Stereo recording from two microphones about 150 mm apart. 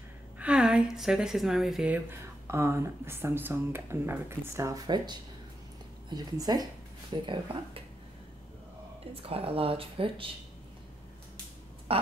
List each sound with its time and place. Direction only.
0.4 s a woman's voice: 5° right (ahead or behind)
2.0 s speech: 15° right (ahead or behind); by 7.8 s 35° right (ahead or behind)
9.1 s speech: 40° right (ahead or behind)
11.9 s a sound: 40° right (ahead or behind)